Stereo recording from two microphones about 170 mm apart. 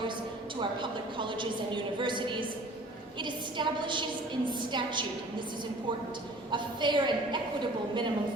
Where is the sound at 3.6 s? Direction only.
25° right (ahead or behind).